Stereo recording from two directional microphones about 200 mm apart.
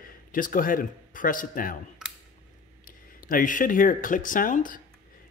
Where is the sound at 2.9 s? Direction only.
45° left (ahead or behind).